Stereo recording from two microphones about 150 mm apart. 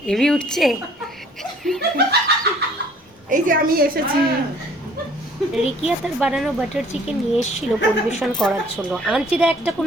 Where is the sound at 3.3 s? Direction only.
70° right (ahead or behind).